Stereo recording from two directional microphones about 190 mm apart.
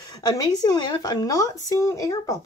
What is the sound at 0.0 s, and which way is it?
Speech, 20° left (ahead or behind).